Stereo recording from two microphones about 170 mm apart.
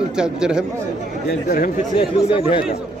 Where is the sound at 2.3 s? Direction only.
30° left (ahead or behind).